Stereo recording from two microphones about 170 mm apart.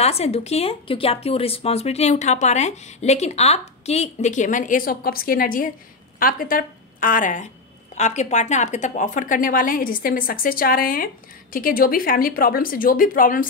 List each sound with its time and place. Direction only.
0.0 s a woman's voice: 40° left (ahead or behind); by 13.5 s 55° left (ahead or behind)